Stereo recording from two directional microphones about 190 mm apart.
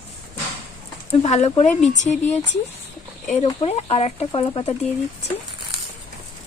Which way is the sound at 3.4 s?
30° left (ahead or behind).